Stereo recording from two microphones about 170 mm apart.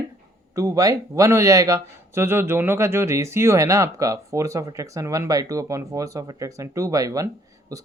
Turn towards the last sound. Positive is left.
turn(degrees=-20)  # may be behind; listen again after turning